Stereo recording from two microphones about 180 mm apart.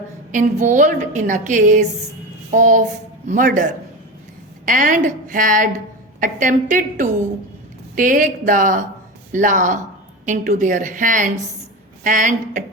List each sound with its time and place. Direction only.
0.3 s a woman's voice: 45° right (ahead or behind)